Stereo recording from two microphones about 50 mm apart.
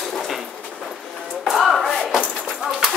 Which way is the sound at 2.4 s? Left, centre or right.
Centre.